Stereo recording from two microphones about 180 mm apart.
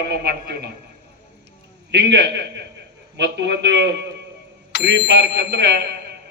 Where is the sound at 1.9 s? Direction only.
70° right (ahead or behind).